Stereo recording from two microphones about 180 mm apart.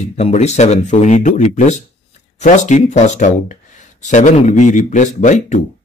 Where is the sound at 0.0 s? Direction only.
40° left (ahead or behind).